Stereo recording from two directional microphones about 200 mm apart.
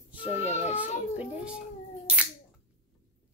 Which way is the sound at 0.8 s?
5° right (ahead or behind).